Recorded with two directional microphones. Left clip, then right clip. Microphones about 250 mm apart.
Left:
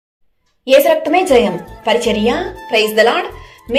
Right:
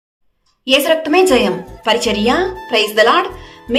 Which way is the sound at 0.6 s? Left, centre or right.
Centre.